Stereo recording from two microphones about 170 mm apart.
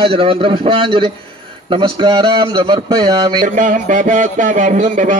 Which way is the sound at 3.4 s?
50° right (ahead or behind).